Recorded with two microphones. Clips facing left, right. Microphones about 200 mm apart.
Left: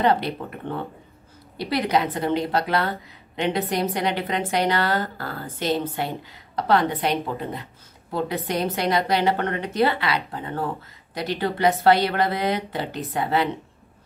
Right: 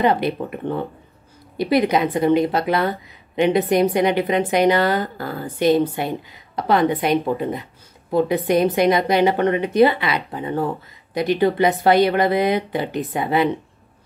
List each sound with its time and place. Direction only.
0.0 s a woman's voice: 15° right (ahead or behind)